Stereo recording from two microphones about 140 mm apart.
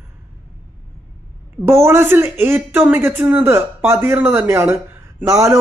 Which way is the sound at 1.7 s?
15° right (ahead or behind).